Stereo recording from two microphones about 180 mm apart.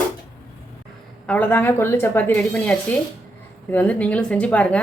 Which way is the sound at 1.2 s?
10° left (ahead or behind).